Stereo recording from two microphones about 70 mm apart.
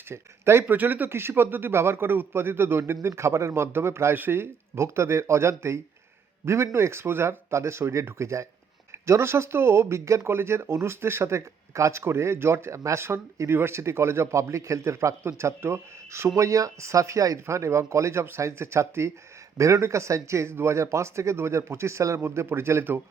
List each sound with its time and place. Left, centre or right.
0.1 s speech: right
0.7 s speech: right